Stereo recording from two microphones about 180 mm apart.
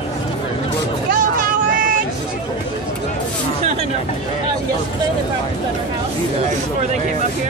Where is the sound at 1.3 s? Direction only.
50° right (ahead or behind).